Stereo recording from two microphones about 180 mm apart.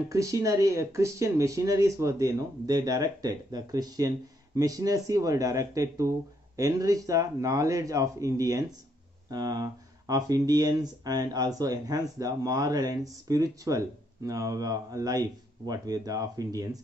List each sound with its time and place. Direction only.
0.1 s speech: 15° right (ahead or behind)